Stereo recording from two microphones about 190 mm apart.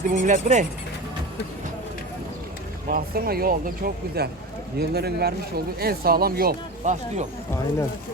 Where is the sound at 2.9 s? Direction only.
50° right (ahead or behind).